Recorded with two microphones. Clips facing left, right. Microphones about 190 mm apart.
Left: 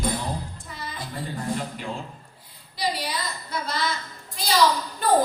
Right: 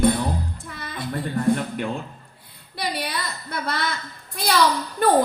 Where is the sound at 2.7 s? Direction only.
60° right (ahead or behind).